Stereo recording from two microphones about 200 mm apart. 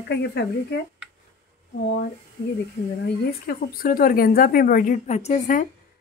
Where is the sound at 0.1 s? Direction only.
55° left (ahead or behind).